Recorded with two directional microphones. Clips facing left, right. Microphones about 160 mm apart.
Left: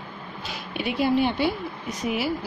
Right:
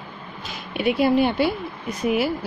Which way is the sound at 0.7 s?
60° right (ahead or behind).